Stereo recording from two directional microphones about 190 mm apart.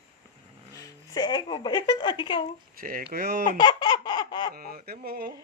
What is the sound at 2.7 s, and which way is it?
Speech, 50° right (ahead or behind).